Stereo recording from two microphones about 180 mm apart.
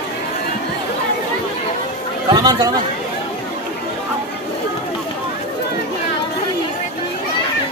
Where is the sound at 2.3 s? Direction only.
25° right (ahead or behind).